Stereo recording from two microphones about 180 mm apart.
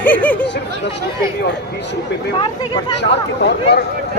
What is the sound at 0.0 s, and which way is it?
Chatter, 10° left (ahead or behind).